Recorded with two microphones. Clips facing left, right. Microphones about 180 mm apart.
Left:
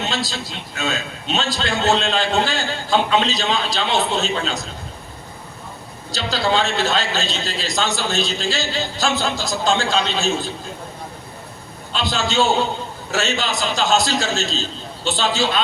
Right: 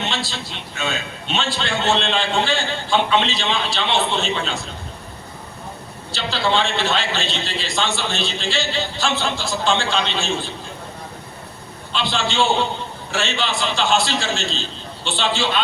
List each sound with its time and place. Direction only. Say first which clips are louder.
0.0 s a man's voice: left 2 dB; 40° left (ahead or behind)
6.1 s a man's voice: left 1 dB; 40° left (ahead or behind)
11.9 s a man's voice: left 1 dB; 40° left (ahead or behind)